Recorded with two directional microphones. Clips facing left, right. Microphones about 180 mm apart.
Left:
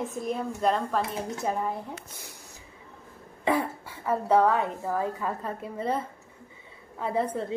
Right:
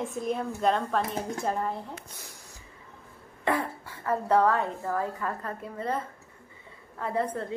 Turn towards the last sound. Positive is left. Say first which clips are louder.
# left 2 dB
turn(degrees=15)  # may be behind; listen again after turning